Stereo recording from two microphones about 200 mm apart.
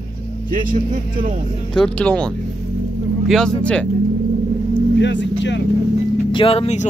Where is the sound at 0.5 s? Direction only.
40° right (ahead or behind).